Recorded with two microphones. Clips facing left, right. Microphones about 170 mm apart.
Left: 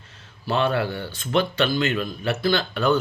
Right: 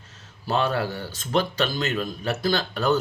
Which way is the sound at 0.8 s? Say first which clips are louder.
Left 2 dB; 40° right (ahead or behind).